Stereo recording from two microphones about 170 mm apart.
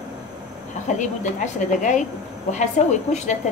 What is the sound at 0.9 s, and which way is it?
Speech, 45° left (ahead or behind).